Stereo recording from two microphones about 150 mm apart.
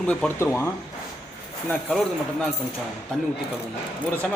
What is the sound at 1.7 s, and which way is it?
A man's voice, 5° left (ahead or behind).